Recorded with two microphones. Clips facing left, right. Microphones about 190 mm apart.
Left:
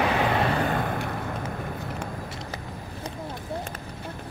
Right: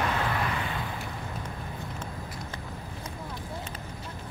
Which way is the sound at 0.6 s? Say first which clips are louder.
Left 8 dB; 55° left (ahead or behind).